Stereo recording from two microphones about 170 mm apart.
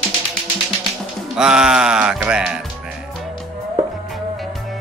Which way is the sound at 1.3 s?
5° right (ahead or behind).